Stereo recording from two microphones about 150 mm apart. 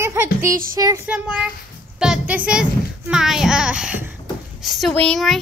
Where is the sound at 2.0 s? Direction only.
5° right (ahead or behind).